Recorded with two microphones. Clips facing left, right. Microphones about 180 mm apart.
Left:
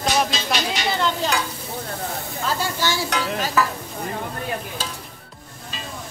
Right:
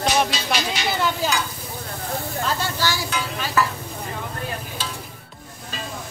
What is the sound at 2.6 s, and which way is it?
Speech, 20° left (ahead or behind).